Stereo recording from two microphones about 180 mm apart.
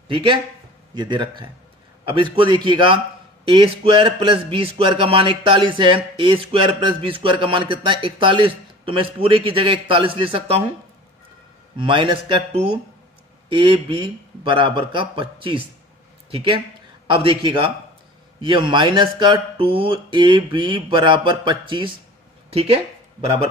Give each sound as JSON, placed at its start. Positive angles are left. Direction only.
{"t": 0.1, "sound": "a man's voice", "side_deg": -30}
{"t": 11.7, "sound": "a man's voice", "side_deg": -25}